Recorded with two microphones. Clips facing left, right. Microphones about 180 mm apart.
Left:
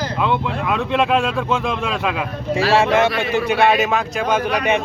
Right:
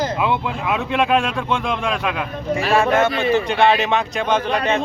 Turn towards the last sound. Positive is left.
turn(degrees=5)  # may be behind; listen again after turning